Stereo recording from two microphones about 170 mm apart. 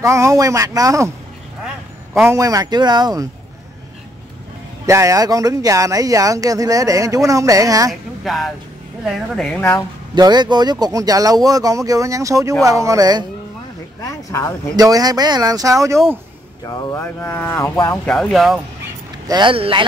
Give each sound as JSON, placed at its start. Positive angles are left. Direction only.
{"t": 0.0, "sound": "speech", "side_deg": -20}
{"t": 2.1, "sound": "speech", "side_deg": -15}
{"t": 4.8, "sound": "speech", "side_deg": -15}
{"t": 8.2, "sound": "a woman's voice", "side_deg": 0}
{"t": 9.6, "sound": "speech", "side_deg": 15}
{"t": 10.1, "sound": "speech", "side_deg": -25}
{"t": 14.0, "sound": "speech", "side_deg": 15}
{"t": 14.8, "sound": "speech", "side_deg": -20}
{"t": 16.6, "sound": "speech", "side_deg": 25}
{"t": 18.1, "sound": "a woman's voice", "side_deg": 0}
{"t": 19.2, "sound": "speech", "side_deg": -25}